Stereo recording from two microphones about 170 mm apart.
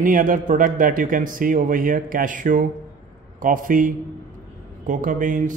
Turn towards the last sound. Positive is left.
turn(degrees=-50)  # may be behind; listen again after turning